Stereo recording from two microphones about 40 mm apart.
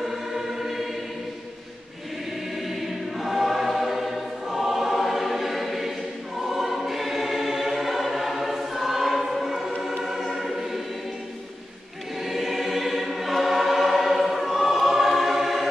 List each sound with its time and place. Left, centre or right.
0.0 s choir: centre
3.2 s choir: centre
12.2 s choir: centre